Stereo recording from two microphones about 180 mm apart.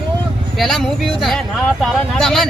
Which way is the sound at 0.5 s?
Centre (ahead or behind).